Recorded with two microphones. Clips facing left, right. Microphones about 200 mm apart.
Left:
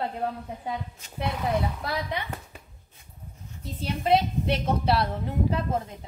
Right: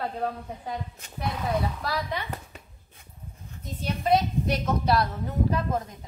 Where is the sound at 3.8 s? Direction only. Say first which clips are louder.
Left 1 dB; 30° left (ahead or behind).